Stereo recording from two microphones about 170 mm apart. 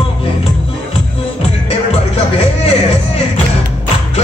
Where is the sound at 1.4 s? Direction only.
40° left (ahead or behind).